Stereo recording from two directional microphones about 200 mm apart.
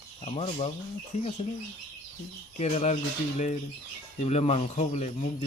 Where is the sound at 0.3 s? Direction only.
30° left (ahead or behind).